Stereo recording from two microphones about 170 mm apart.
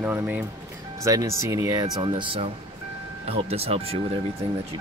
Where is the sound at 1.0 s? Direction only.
20° right (ahead or behind).